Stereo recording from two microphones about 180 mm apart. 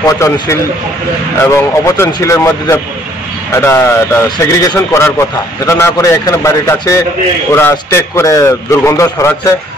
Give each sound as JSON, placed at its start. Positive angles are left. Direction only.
{"t": 0.0, "sound": "a man's voice", "side_deg": 15}